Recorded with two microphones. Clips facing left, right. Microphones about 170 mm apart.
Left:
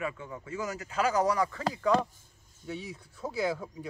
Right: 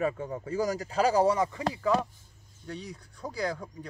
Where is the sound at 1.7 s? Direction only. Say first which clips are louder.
Even; centre (ahead or behind).